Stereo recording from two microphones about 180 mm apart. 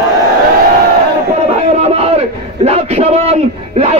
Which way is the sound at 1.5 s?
35° right (ahead or behind).